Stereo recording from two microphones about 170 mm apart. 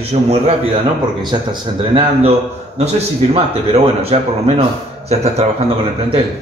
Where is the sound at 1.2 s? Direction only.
25° right (ahead or behind).